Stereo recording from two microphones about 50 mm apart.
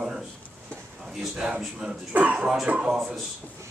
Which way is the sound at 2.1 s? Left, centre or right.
Right.